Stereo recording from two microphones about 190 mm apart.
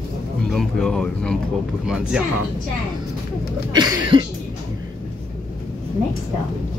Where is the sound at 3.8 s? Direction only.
25° right (ahead or behind).